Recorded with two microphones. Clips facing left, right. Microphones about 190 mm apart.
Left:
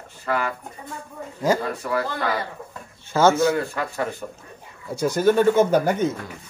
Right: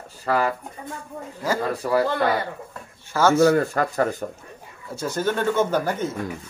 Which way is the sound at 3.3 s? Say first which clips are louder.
Right 4 dB; 45° right (ahead or behind).